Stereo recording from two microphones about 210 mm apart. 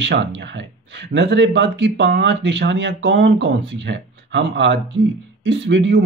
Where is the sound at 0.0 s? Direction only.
55° right (ahead or behind).